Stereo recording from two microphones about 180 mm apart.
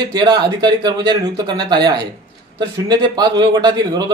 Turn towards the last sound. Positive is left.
turn(degrees=-20)  # may be behind; listen again after turning